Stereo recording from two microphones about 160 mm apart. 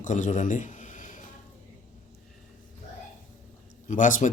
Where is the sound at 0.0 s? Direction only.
50° left (ahead or behind).